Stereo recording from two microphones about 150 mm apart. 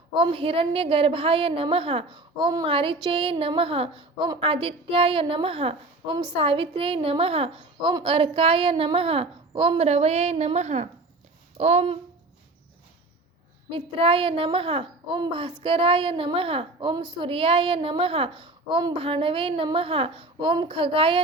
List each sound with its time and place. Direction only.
0.1 s a woman's voice: 35° right (ahead or behind)
13.7 s a woman's voice: 40° right (ahead or behind)